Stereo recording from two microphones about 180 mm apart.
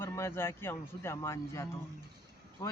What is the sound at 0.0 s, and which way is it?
Speech, 15° left (ahead or behind).